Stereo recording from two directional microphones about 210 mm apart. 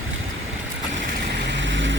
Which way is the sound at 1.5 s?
60° right (ahead or behind).